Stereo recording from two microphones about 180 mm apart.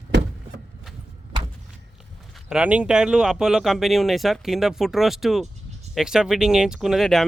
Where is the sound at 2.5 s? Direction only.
5° right (ahead or behind).